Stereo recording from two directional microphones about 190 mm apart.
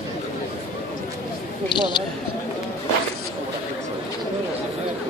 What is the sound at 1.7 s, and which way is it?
Speech, 25° left (ahead or behind).